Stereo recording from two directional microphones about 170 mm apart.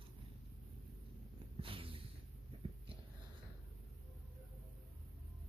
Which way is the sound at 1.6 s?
30° right (ahead or behind).